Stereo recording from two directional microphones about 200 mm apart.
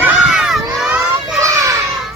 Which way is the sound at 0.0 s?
Centre (ahead or behind).